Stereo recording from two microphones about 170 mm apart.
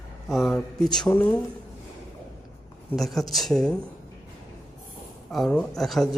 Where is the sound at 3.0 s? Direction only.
Centre (ahead or behind).